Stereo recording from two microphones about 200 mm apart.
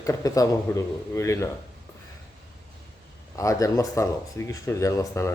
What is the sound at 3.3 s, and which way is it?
Speech, 15° left (ahead or behind).